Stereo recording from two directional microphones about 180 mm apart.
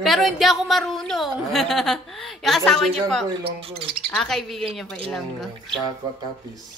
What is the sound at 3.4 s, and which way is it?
Speech, 30° right (ahead or behind).